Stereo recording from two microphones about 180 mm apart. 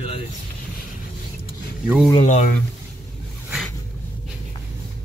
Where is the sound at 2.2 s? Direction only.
40° left (ahead or behind).